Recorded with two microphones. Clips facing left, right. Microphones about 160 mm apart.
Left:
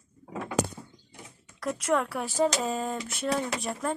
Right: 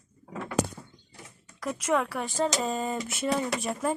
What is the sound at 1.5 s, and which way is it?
Speech, centre (ahead or behind).